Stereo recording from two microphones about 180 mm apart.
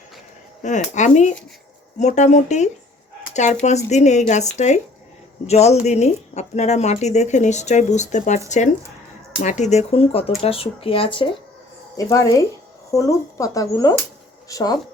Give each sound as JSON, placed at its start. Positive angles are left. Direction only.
{"t": 0.6, "sound": "speech", "side_deg": 40}
{"t": 11.9, "sound": "speech", "side_deg": 20}